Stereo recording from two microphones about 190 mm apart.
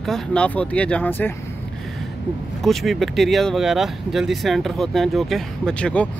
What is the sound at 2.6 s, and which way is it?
Speech, centre (ahead or behind).